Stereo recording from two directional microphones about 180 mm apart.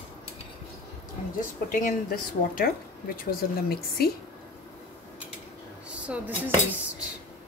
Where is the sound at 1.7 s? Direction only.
50° left (ahead or behind).